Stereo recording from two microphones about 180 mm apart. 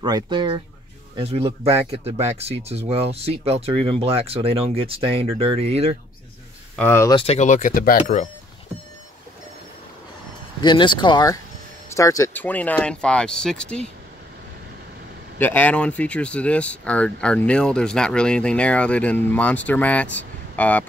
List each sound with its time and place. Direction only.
0.0 s speech: 25° right (ahead or behind)
6.8 s speech: 15° left (ahead or behind)
7.2 s speech: 35° left (ahead or behind)
10.6 s speech: 25° left (ahead or behind); by 13.8 s 5° left (ahead or behind)
15.3 s speech: 10° left (ahead or behind)